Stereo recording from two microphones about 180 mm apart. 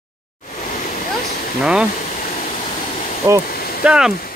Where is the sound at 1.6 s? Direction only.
5° right (ahead or behind).